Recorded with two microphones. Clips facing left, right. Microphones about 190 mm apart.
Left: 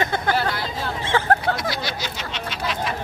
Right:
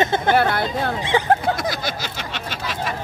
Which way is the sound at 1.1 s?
15° right (ahead or behind).